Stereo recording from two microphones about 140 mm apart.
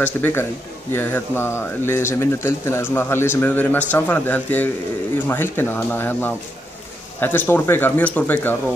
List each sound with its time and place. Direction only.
0.0 s speech: 15° left (ahead or behind)